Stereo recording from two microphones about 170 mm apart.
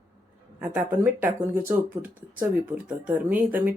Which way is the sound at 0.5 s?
10° right (ahead or behind).